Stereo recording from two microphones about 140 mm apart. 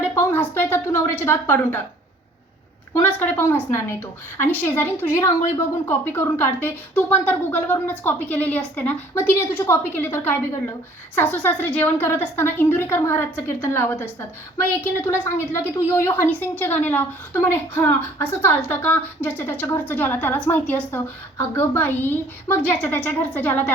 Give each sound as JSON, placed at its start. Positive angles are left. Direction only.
{"t": 0.0, "sound": "a woman's voice", "side_deg": 20}
{"t": 2.9, "sound": "a woman's voice", "side_deg": 15}